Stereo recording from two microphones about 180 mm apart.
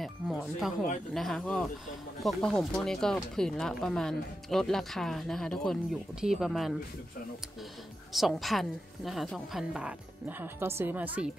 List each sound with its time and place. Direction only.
0.0 s speech: centre (ahead or behind)
8.1 s speech: centre (ahead or behind)